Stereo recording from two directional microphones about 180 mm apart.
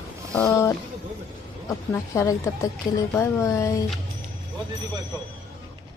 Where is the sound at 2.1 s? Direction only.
15° left (ahead or behind).